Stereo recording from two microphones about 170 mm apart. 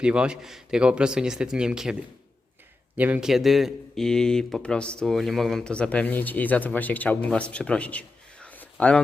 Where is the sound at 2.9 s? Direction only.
10° right (ahead or behind).